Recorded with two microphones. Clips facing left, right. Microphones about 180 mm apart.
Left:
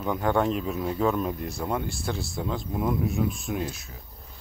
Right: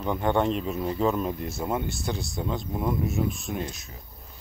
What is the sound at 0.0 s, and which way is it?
Speech, centre (ahead or behind).